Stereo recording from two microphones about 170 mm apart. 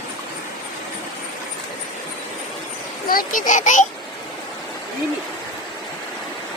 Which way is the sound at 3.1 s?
55° left (ahead or behind).